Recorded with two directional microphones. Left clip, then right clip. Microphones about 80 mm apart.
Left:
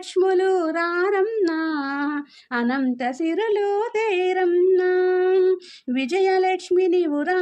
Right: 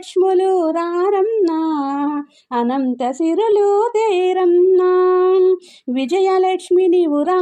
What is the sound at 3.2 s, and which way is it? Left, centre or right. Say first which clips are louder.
Child singing: right 8 dB; right.